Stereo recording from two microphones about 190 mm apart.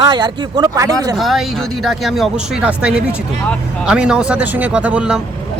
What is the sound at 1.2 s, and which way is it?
Speech, centre (ahead or behind).